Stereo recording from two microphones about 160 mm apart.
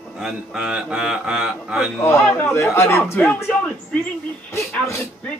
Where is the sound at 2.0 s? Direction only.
15° left (ahead or behind).